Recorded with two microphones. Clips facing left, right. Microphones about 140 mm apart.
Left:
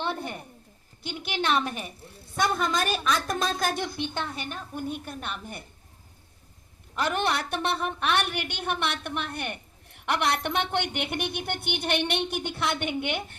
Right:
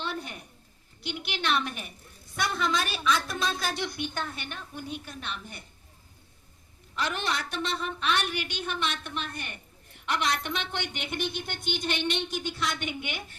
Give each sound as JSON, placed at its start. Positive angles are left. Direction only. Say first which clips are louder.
{"t": 0.0, "sound": "a sound", "louder": "left 4 dB", "side_deg": 55}
{"t": 1.0, "sound": "a woman's voice", "louder": "left 3 dB", "side_deg": 45}
{"t": 3.9, "sound": "a woman's voice", "louder": "left 2 dB", "side_deg": 25}
{"t": 4.4, "sound": "a woman's voice", "louder": "left 5 dB", "side_deg": 45}
{"t": 6.9, "sound": "a woman's voice", "louder": "left 4 dB", "side_deg": 50}